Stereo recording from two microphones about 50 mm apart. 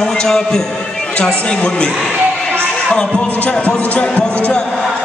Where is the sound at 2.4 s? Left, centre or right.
Centre.